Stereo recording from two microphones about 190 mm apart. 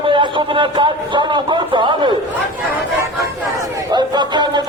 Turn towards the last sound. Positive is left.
turn(degrees=-25)  # may be behind; listen again after turning